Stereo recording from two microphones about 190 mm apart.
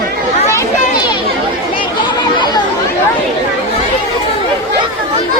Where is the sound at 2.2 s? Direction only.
20° left (ahead or behind).